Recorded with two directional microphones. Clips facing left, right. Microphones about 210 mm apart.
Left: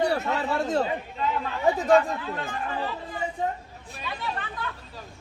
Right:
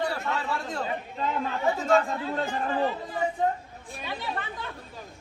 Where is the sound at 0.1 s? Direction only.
25° left (ahead or behind).